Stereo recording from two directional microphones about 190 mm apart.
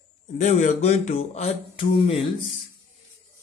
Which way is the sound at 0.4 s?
40° left (ahead or behind).